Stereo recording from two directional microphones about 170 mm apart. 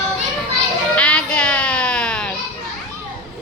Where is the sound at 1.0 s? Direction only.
5° left (ahead or behind).